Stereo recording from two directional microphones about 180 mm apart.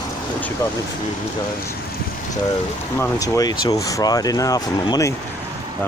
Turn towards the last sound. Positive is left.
turn(degrees=20)  # may be behind; listen again after turning